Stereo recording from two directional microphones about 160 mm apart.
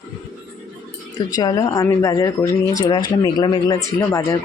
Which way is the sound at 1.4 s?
25° left (ahead or behind).